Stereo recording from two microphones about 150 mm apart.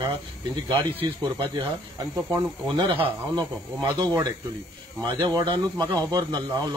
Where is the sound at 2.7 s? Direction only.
30° right (ahead or behind).